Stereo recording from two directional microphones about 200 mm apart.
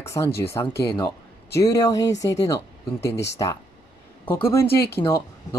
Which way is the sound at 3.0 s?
60° left (ahead or behind).